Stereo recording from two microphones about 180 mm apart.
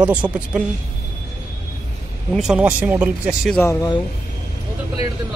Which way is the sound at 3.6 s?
10° left (ahead or behind).